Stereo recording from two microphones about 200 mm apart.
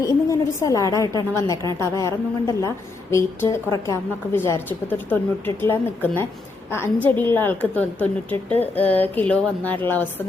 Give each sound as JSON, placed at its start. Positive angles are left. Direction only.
{"t": 0.0, "sound": "a woman's voice", "side_deg": 15}